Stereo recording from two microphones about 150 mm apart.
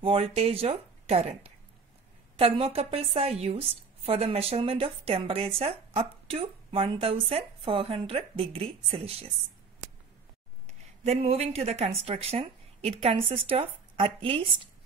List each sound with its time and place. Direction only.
0.0 s a woman's voice: 40° right (ahead or behind)
10.7 s speech: 45° right (ahead or behind)